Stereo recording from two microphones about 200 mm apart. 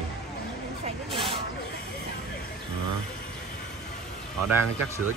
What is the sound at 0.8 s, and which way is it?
Speech, 25° right (ahead or behind).